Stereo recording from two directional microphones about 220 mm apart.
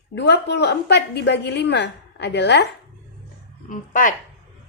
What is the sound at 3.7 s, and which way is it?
Speech, 35° left (ahead or behind).